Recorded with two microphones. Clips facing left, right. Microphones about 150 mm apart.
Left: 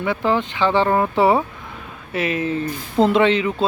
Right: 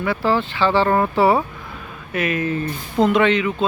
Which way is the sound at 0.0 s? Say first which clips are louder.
Even; 20° left (ahead or behind).